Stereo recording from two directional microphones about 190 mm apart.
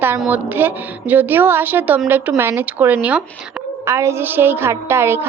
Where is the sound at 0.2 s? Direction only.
10° right (ahead or behind).